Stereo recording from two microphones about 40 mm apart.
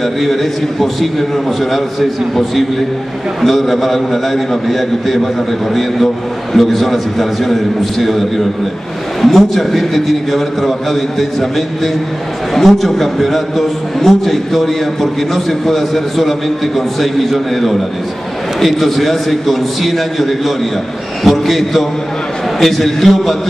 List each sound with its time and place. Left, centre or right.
0.0 s a man's voice: centre
6.5 s a man's voice: centre